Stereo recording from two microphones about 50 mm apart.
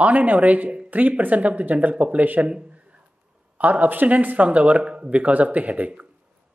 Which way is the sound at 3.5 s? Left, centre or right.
Right.